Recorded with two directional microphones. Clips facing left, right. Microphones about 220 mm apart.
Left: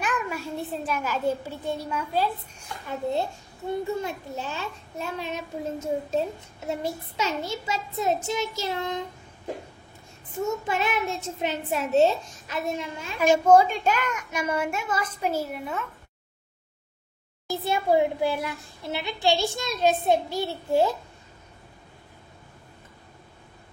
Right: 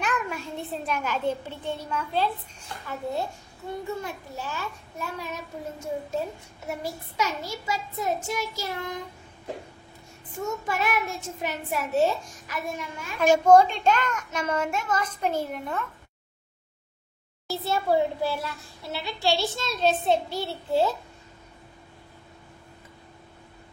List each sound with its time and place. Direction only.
0.0 s a sound: 10° left (ahead or behind)
0.8 s a child's voice: 5° left (ahead or behind)
2.9 s a child's voice: 25° left (ahead or behind)
10.7 s a child's voice: 25° left (ahead or behind)
13.2 s a child's voice: 5° left (ahead or behind)
17.5 s a child's voice: 15° left (ahead or behind)